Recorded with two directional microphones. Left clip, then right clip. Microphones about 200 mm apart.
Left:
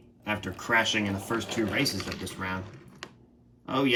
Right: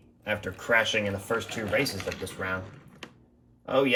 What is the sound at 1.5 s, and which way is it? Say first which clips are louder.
Speech: even; 55° left (ahead or behind).